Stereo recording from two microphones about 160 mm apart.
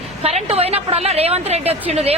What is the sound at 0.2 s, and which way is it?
A woman's voice, 40° right (ahead or behind).